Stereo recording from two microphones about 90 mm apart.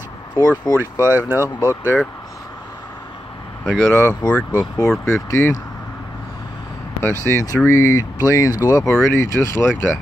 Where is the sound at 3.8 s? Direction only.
30° left (ahead or behind).